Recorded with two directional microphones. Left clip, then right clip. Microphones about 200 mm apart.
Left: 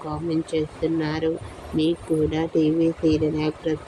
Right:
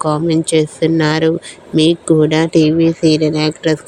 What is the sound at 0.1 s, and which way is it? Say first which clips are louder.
Speech: right 9 dB; 40° right (ahead or behind).